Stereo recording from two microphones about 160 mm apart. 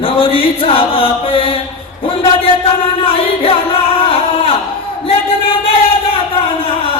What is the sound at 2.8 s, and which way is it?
Music, 35° left (ahead or behind).